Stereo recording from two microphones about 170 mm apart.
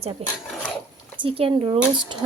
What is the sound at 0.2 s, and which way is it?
Speech, 35° right (ahead or behind).